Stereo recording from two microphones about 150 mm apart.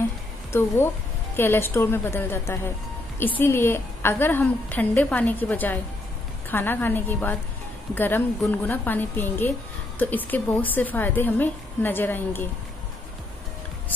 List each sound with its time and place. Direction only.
0.5 s a woman's voice: 15° left (ahead or behind)